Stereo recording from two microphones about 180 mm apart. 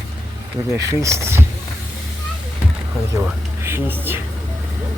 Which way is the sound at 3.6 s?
15° right (ahead or behind).